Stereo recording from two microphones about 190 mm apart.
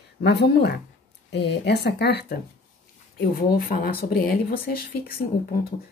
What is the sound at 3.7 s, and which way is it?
Speech, 55° left (ahead or behind).